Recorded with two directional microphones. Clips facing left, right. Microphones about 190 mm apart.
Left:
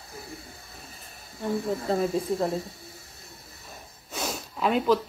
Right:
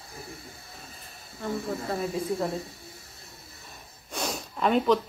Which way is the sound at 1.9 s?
30° left (ahead or behind).